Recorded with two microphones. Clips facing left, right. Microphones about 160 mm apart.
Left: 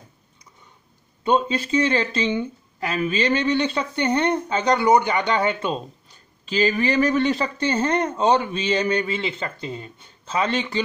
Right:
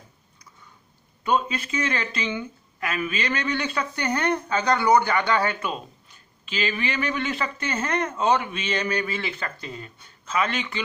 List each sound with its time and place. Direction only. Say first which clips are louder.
1.2 s speech: left 4 dB; 30° left (ahead or behind)